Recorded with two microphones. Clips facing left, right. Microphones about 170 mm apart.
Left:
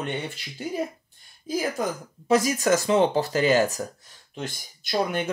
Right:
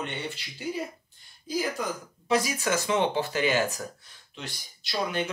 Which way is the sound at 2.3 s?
45° left (ahead or behind).